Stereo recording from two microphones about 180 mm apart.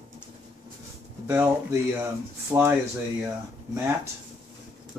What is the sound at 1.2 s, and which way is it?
Speech, 15° right (ahead or behind).